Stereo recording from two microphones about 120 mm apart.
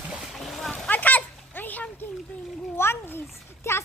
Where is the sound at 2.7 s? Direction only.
20° left (ahead or behind).